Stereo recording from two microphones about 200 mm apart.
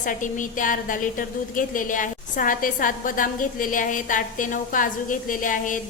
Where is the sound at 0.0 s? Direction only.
40° left (ahead or behind).